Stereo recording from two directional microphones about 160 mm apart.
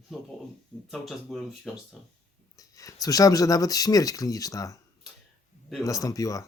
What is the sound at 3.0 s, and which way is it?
Speech, 20° left (ahead or behind).